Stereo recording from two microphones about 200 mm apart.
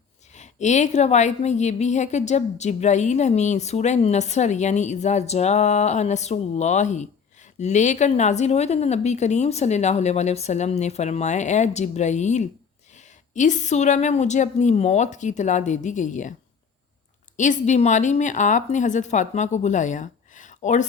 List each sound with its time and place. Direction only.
0.3 s a woman's voice: 35° left (ahead or behind)
17.3 s a woman's voice: 40° left (ahead or behind)